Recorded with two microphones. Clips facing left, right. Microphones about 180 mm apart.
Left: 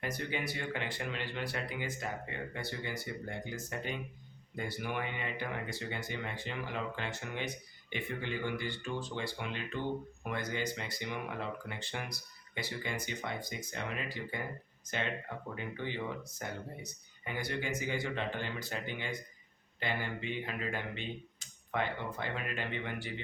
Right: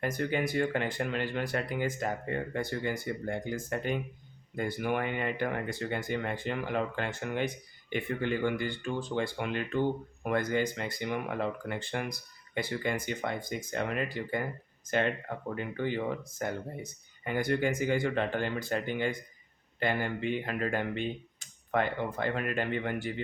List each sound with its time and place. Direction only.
0.0 s speech: 50° right (ahead or behind)